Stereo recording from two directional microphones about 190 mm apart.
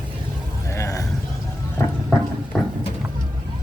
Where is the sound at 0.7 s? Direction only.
15° left (ahead or behind).